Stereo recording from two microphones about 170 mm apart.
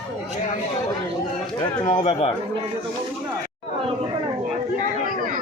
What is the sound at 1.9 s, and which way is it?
Speech, 35° left (ahead or behind).